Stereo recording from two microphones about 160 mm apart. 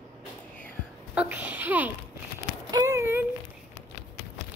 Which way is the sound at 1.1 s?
10° right (ahead or behind).